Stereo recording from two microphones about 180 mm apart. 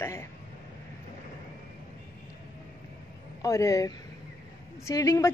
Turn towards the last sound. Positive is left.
turn(degrees=15)  # may be behind; listen again after turning